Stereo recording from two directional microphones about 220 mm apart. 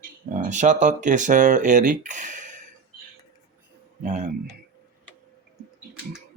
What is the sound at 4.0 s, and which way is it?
Speech, 35° right (ahead or behind).